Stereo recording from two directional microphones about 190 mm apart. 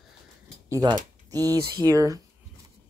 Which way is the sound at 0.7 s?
20° right (ahead or behind).